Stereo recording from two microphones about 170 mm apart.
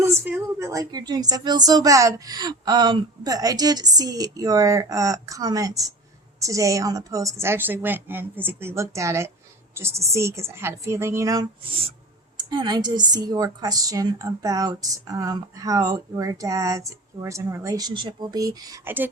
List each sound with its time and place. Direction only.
0.0 s a woman's voice: 15° right (ahead or behind)